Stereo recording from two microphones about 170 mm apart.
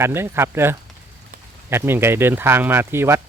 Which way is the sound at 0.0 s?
15° right (ahead or behind).